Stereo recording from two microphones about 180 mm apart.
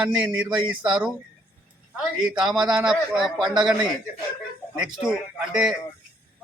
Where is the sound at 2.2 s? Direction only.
Centre (ahead or behind).